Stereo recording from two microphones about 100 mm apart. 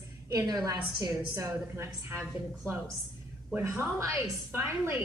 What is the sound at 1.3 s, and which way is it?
A woman's voice, 25° right (ahead or behind).